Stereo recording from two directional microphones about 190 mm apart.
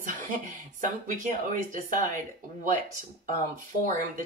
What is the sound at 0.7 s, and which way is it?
Speech, 45° right (ahead or behind).